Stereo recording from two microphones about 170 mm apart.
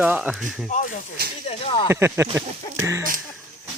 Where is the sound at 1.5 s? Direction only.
30° left (ahead or behind).